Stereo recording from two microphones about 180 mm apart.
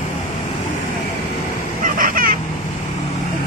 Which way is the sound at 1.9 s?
50° right (ahead or behind).